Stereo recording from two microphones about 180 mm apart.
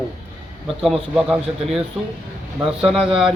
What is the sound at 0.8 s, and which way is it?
A man's voice, centre (ahead or behind).